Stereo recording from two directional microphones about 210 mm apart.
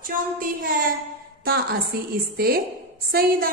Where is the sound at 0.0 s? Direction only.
40° right (ahead or behind).